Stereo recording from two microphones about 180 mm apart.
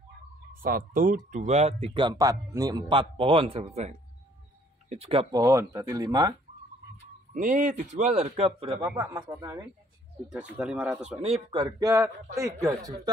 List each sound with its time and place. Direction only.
0.5 s speech: 50° right (ahead or behind); by 5.3 s 35° right (ahead or behind)
5.3 s speech: 20° right (ahead or behind)
7.3 s speech: 45° right (ahead or behind); by 8.9 s 30° right (ahead or behind)
8.9 s speech: 15° right (ahead or behind)
11.5 s speech: 25° right (ahead or behind)